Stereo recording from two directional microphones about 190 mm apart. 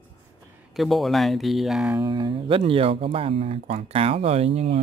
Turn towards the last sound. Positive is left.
turn(degrees=-30)  # may be behind; listen again after turning